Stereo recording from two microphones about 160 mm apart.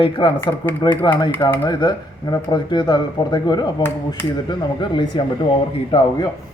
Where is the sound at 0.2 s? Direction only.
30° left (ahead or behind).